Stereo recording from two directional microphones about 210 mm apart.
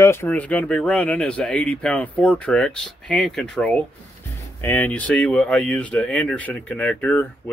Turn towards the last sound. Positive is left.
turn(degrees=10)  # may be behind; listen again after turning